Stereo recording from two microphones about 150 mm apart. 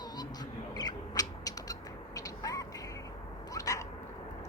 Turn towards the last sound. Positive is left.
turn(degrees=20)  # may be behind; listen again after turning